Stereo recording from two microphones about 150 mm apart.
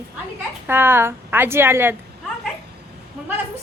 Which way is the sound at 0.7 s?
15° right (ahead or behind).